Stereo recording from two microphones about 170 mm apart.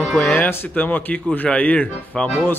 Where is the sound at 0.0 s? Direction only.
10° left (ahead or behind).